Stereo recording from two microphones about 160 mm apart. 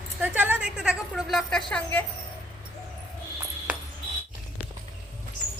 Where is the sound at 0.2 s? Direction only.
10° right (ahead or behind); by 2.0 s 10° left (ahead or behind).